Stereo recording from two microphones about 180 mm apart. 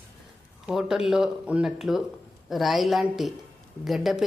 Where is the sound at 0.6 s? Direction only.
Centre (ahead or behind).